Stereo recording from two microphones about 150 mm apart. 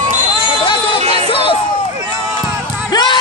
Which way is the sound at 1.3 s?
35° left (ahead or behind).